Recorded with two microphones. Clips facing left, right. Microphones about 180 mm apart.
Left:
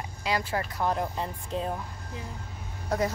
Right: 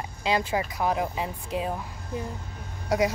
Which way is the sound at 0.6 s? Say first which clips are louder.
Right 2 dB; 10° right (ahead or behind).